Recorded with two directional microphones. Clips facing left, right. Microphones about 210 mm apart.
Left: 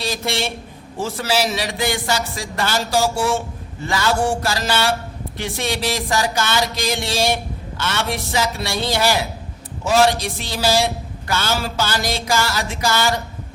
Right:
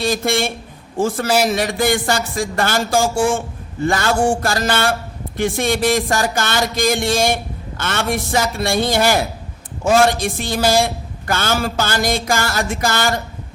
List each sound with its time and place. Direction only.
0.0 s a man's voice: 50° right (ahead or behind)